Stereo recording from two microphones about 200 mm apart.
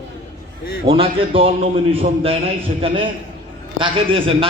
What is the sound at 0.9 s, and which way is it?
A man's voice, 25° right (ahead or behind).